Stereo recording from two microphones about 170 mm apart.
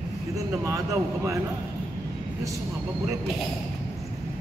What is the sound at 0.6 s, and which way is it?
Speech, 20° right (ahead or behind).